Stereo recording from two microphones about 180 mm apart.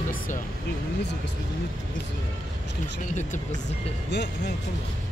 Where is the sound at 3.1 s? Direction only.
40° left (ahead or behind).